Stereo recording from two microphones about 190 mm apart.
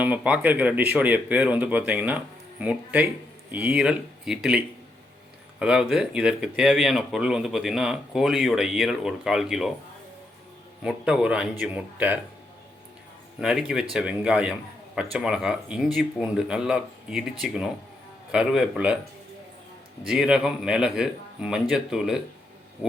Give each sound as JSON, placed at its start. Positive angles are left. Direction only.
{"t": 0.0, "sound": "speech", "side_deg": -10}
{"t": 10.8, "sound": "speech", "side_deg": -5}
{"t": 13.4, "sound": "speech", "side_deg": -5}
{"t": 20.1, "sound": "speech", "side_deg": -5}